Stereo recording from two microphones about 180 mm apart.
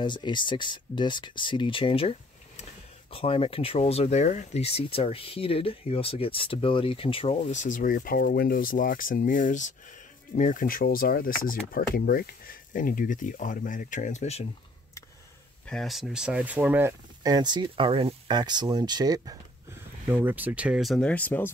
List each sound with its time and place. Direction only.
0.0 s speech: 25° left (ahead or behind)
15.6 s speech: 5° left (ahead or behind)
17.2 s speech: 25° right (ahead or behind); by 21.5 s 10° left (ahead or behind)